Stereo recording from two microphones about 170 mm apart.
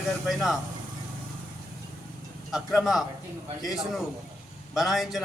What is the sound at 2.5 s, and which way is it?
Speech, centre (ahead or behind).